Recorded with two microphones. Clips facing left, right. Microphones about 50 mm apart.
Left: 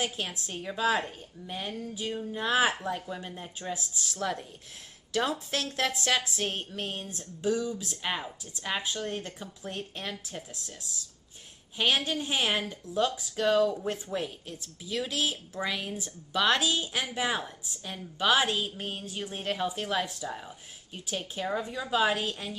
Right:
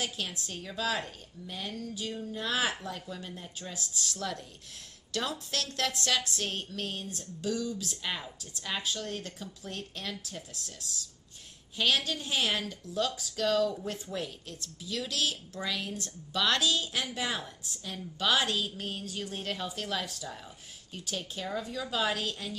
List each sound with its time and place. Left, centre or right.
0.5 s a woman's voice: left
7.1 s a woman's voice: centre